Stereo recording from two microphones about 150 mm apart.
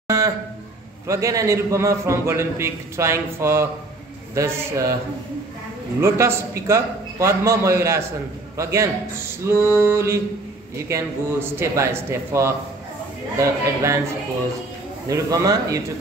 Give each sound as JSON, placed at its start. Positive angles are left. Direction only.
{"t": 1.0, "sound": "a man's voice", "side_deg": -20}
{"t": 5.9, "sound": "a man's voice", "side_deg": -20}
{"t": 15.0, "sound": "a man's voice", "side_deg": -20}